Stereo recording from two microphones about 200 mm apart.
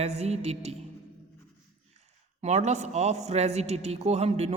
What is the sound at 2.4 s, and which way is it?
A man's voice, 35° right (ahead or behind).